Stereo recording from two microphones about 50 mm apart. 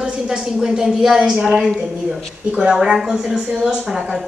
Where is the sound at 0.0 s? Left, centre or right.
Centre.